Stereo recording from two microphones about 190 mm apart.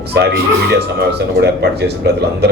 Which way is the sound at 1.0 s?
60° right (ahead or behind).